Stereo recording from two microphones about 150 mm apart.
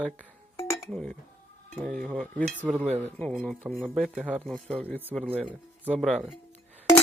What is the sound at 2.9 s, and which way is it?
Speech, 45° right (ahead or behind).